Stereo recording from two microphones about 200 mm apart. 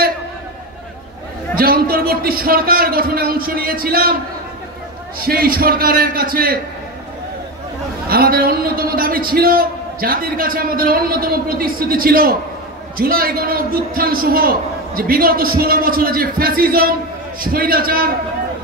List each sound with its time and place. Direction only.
1.5 s a man's voice: 45° right (ahead or behind)
5.2 s a man's voice: 45° right (ahead or behind)
8.1 s a man's voice: 50° right (ahead or behind)